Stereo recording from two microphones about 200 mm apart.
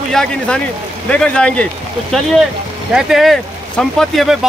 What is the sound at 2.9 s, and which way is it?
Speech, centre (ahead or behind).